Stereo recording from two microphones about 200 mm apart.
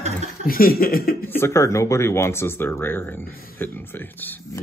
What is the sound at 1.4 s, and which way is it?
Speech, 15° left (ahead or behind).